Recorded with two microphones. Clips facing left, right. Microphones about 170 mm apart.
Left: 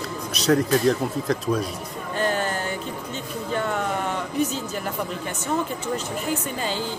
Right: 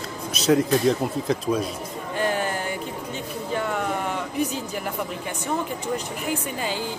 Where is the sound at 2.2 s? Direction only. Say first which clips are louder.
Even; 10° right (ahead or behind).